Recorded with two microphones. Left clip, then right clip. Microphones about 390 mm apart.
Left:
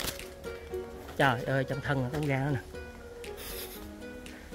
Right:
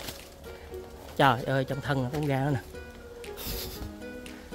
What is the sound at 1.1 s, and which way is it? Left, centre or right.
Speech, centre.